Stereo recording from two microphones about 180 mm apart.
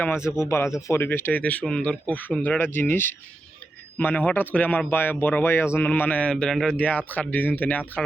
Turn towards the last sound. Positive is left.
turn(degrees=10)  # may be behind; listen again after turning